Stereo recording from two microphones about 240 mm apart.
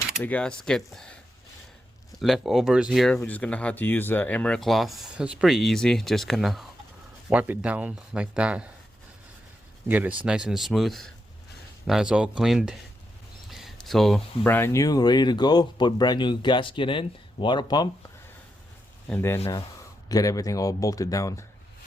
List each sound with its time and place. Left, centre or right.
0.2 s speech: centre
2.1 s speech: centre
9.9 s speech: centre
19.0 s speech: centre